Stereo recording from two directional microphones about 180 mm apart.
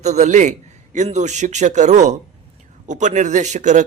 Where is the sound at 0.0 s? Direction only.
40° right (ahead or behind).